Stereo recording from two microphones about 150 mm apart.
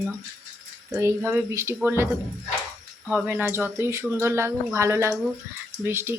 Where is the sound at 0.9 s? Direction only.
15° right (ahead or behind).